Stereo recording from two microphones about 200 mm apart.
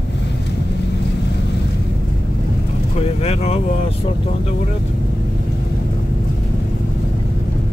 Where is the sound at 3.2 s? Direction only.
30° left (ahead or behind).